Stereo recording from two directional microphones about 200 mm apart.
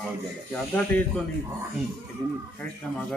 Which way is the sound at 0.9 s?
10° left (ahead or behind).